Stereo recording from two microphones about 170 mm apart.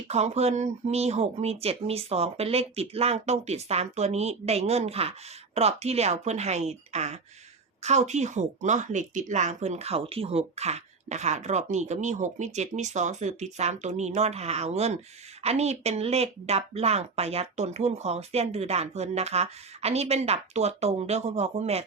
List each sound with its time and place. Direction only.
0.1 s speech: 40° right (ahead or behind)